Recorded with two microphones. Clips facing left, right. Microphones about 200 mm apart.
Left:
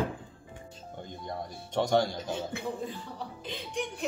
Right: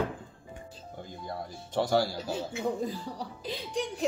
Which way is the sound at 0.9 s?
5° right (ahead or behind).